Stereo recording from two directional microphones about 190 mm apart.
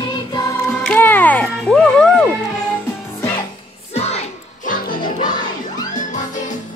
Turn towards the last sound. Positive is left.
turn(degrees=50)  # may be behind; listen again after turning